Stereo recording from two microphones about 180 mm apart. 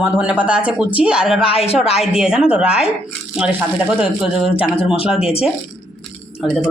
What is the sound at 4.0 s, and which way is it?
Speech, 5° right (ahead or behind).